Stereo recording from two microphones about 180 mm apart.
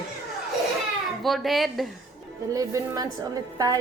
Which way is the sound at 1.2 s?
Centre (ahead or behind).